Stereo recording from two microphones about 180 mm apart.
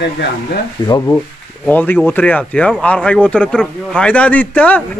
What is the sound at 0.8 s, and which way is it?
A man's voice, 20° left (ahead or behind).